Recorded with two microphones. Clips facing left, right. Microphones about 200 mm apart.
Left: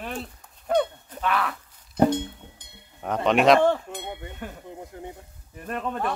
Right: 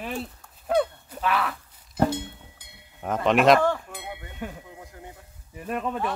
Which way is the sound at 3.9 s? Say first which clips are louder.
Left 3 dB; 5° right (ahead or behind).